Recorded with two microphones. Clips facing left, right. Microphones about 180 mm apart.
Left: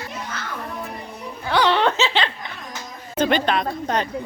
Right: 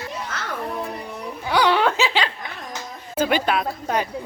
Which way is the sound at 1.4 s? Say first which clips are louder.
Even; 10° right (ahead or behind).